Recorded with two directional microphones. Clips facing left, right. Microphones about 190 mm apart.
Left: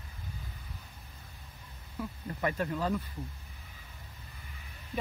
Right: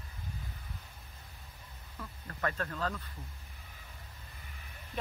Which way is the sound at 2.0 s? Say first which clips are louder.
Left 4 dB; 15° left (ahead or behind).